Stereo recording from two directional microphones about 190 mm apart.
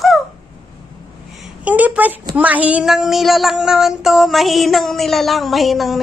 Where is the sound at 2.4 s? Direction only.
10° right (ahead or behind).